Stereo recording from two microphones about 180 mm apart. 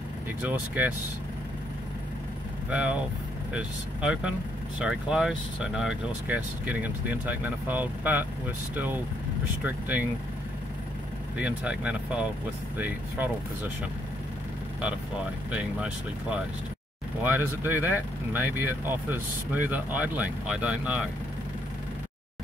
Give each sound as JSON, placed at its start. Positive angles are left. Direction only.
{"t": 0.4, "sound": "speech", "side_deg": -10}
{"t": 2.7, "sound": "speech", "side_deg": -5}
{"t": 11.3, "sound": "speech", "side_deg": -5}
{"t": 15.5, "sound": "speech", "side_deg": -5}